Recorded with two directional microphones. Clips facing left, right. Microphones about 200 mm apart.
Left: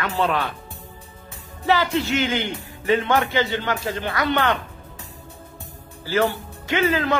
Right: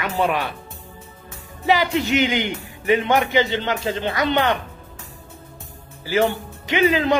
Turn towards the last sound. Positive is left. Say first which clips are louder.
# right 3 dB
turn(degrees=-15)  # may be behind; listen again after turning